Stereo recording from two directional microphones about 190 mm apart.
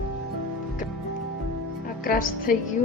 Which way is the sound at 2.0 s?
50° left (ahead or behind).